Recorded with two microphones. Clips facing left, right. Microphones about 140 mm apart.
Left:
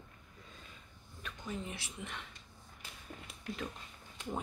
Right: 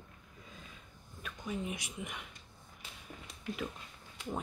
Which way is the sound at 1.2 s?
10° right (ahead or behind).